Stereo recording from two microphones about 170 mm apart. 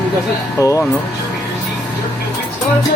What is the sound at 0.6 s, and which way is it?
Speech, 20° left (ahead or behind).